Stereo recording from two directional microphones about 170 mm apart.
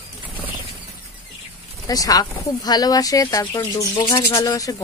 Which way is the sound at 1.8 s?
20° left (ahead or behind).